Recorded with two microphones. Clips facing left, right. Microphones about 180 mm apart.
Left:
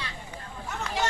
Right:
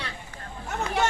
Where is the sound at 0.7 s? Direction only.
55° right (ahead or behind).